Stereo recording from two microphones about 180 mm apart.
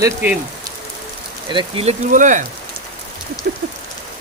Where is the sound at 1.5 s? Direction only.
30° right (ahead or behind); by 2.4 s 45° right (ahead or behind).